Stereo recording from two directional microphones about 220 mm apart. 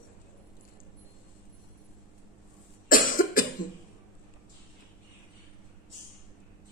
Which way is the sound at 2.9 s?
40° left (ahead or behind).